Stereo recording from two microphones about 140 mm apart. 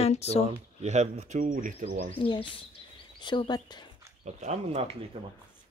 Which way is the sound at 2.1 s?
35° left (ahead or behind).